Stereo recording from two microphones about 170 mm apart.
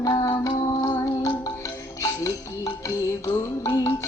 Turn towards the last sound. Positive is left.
turn(degrees=20)  # may be behind; listen again after turning